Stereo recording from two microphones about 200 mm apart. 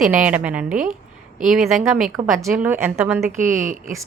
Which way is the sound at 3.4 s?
40° right (ahead or behind).